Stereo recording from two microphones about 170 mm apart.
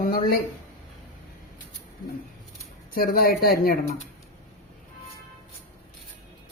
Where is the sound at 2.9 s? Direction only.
60° left (ahead or behind).